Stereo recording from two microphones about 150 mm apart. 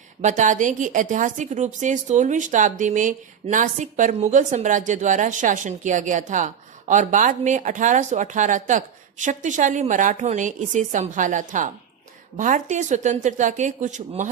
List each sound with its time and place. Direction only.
0.2 s a woman's voice: 55° right (ahead or behind)